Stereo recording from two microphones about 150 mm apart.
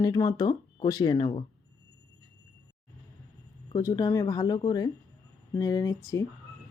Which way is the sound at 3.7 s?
25° left (ahead or behind).